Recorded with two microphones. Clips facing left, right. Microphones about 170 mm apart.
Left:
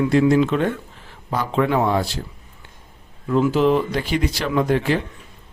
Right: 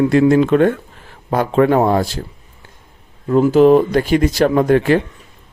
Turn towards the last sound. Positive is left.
turn(degrees=-50)  # may be behind; listen again after turning